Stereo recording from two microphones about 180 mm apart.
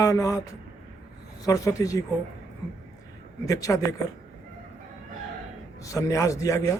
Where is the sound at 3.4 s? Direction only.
20° left (ahead or behind).